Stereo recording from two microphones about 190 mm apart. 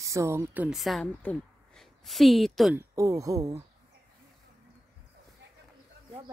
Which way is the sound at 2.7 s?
15° right (ahead or behind).